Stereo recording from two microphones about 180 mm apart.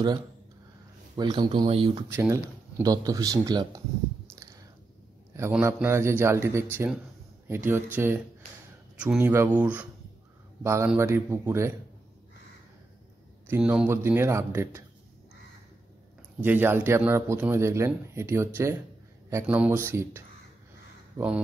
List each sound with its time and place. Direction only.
1.1 s speech: 25° right (ahead or behind)
2.0 s speech: 15° right (ahead or behind)
5.5 s speech: 10° right (ahead or behind)
13.5 s speech: 5° right (ahead or behind)
16.4 s speech: 10° right (ahead or behind)